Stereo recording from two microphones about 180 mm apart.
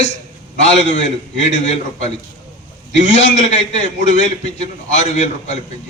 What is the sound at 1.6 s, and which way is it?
Speech, 40° left (ahead or behind).